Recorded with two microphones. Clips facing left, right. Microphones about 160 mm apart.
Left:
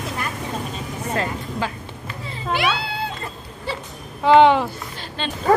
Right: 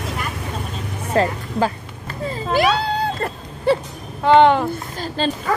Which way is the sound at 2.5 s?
40° right (ahead or behind).